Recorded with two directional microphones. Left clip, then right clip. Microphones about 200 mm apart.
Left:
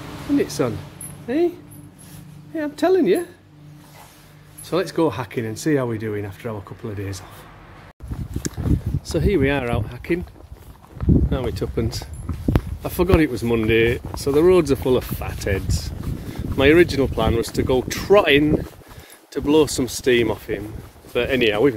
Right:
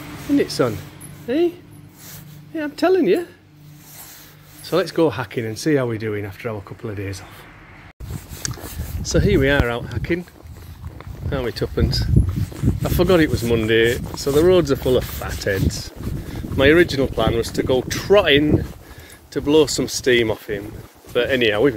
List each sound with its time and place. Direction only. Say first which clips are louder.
0.4 s speech: right 3 dB; 15° right (ahead or behind)
2.5 s speech: right 1 dB; 5° right (ahead or behind)
4.6 s speech: right 2 dB; 5° right (ahead or behind)
8.4 s a sound: right 2 dB; 20° left (ahead or behind)
9.1 s speech: right 3 dB; 10° left (ahead or behind)
11.2 s speech: right 2 dB; 5° left (ahead or behind)